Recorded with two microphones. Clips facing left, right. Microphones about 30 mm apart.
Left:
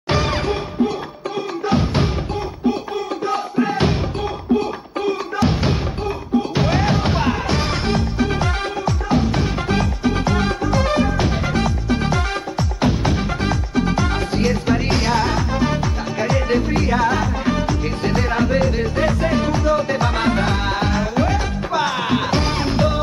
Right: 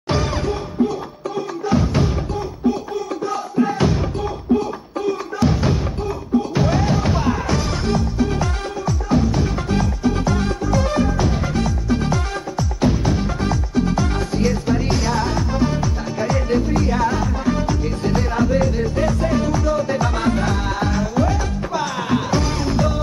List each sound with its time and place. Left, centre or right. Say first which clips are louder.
0.1 s music: left 2 dB; left
3.3 s music: even; left